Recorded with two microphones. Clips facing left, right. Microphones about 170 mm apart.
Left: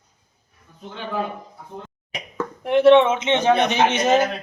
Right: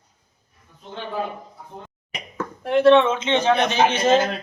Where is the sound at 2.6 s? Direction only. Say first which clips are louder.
Left 2 dB; 20° left (ahead or behind).